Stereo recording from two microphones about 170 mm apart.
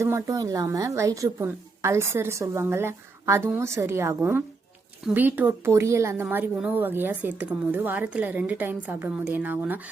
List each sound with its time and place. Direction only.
0.0 s speech: 15° right (ahead or behind)